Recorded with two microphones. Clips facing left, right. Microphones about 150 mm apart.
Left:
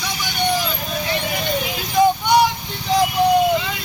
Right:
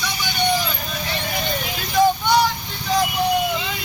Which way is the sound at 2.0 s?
15° left (ahead or behind).